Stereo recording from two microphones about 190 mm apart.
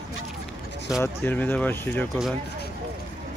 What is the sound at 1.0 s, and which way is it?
Speech, 10° left (ahead or behind).